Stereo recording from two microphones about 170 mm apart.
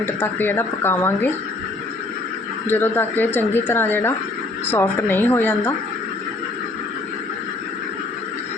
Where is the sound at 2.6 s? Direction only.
10° left (ahead or behind).